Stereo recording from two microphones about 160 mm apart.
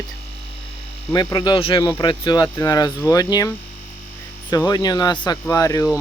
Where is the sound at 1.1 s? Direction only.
25° left (ahead or behind).